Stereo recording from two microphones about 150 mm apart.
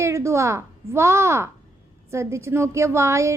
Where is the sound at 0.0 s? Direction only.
20° right (ahead or behind).